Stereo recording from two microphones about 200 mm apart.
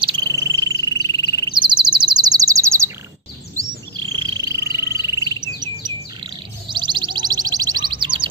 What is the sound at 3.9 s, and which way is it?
Frog, 20° right (ahead or behind).